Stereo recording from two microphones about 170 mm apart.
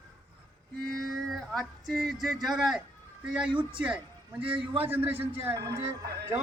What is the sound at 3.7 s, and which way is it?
A man's voice, 5° right (ahead or behind).